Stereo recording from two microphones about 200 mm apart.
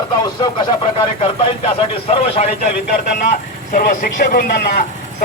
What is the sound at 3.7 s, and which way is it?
A man's voice, 50° left (ahead or behind).